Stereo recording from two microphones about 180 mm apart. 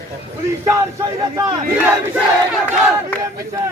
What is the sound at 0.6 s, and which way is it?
Speech, 15° right (ahead or behind).